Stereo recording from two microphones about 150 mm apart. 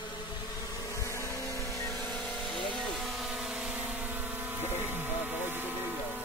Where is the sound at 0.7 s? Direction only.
20° left (ahead or behind).